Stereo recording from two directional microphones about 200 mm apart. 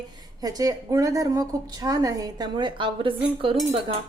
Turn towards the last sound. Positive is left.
turn(degrees=-25)  # may be behind; listen again after turning